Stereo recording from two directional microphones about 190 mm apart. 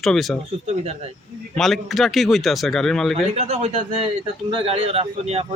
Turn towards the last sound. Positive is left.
turn(degrees=-35)  # may be behind; listen again after turning